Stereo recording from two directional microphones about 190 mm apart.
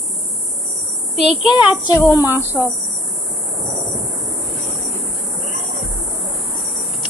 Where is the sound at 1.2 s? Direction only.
5° right (ahead or behind).